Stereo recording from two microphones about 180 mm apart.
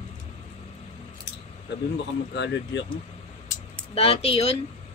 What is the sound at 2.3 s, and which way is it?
Speech, 75° left (ahead or behind).